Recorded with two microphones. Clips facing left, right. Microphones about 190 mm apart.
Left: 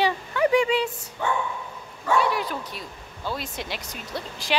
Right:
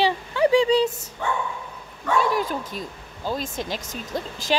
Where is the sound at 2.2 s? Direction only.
45° right (ahead or behind).